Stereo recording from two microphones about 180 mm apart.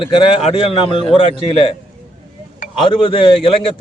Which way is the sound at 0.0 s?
30° left (ahead or behind).